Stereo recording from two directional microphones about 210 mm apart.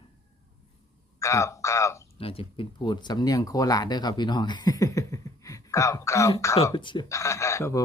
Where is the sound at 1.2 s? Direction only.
15° left (ahead or behind).